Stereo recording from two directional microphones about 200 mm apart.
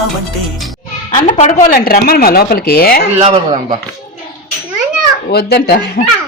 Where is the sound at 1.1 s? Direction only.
35° left (ahead or behind).